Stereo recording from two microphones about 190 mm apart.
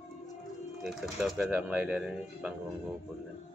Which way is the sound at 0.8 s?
Centre (ahead or behind).